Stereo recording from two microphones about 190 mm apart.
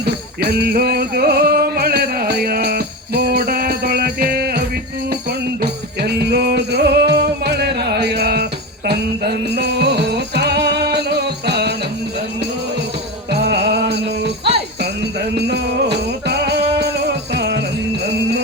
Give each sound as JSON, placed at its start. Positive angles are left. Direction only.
{"t": 0.6, "sound": "music", "side_deg": -55}
{"t": 6.0, "sound": "music", "side_deg": -60}
{"t": 13.4, "sound": "music", "side_deg": -60}
{"t": 15.4, "sound": "music", "side_deg": -60}